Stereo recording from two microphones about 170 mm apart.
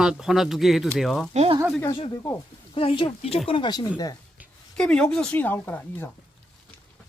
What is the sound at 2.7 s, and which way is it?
Speech, 30° left (ahead or behind).